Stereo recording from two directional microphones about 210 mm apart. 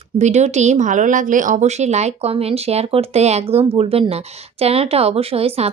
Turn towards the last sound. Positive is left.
turn(degrees=-30)  # may be behind; listen again after turning